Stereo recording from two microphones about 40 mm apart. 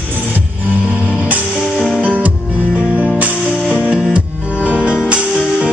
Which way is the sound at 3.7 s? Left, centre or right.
Right.